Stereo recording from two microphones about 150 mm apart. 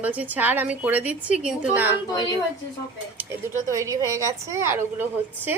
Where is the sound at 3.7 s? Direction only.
20° right (ahead or behind).